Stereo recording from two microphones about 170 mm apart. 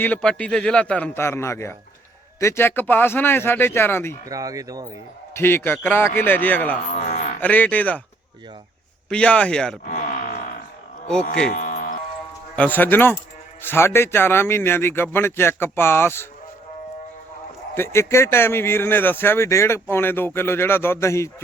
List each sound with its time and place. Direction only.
0.0 s speech: 5° left (ahead or behind)
4.3 s speech: 20° right (ahead or behind)
5.3 s speech: 15° left (ahead or behind)
7.1 s livestock: 50° left (ahead or behind)
7.4 s speech: 10° left (ahead or behind)
9.0 s speech: 5° left (ahead or behind)
9.8 s speech: 50° left (ahead or behind)
11.5 s music: 50° left (ahead or behind)
12.5 s speech: 10° left (ahead or behind)
17.7 s speech: 15° left (ahead or behind)